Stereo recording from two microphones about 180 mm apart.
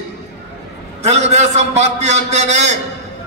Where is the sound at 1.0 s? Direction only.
40° right (ahead or behind).